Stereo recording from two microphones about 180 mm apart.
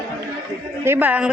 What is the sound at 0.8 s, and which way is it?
Speech, 10° right (ahead or behind).